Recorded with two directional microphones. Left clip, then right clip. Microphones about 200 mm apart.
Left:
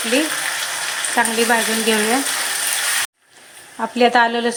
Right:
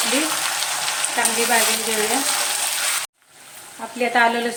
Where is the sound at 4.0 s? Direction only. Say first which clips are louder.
Left 3 dB; 35° left (ahead or behind).